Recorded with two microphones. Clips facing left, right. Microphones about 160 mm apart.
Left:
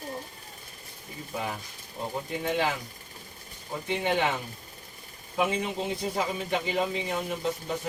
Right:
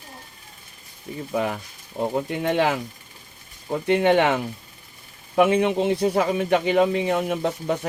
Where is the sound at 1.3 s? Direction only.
70° right (ahead or behind).